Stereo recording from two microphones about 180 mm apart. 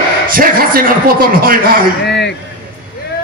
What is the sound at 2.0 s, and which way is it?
Speech, 70° left (ahead or behind).